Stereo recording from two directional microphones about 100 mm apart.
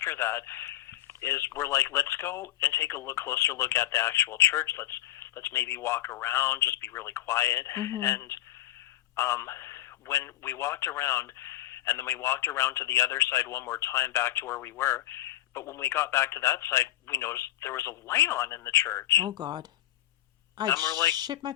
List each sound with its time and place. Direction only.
0.0 s a man's voice: 25° left (ahead or behind)
19.1 s speech: 45° right (ahead or behind)
20.7 s a man's voice: 30° left (ahead or behind)
21.2 s speech: 45° right (ahead or behind)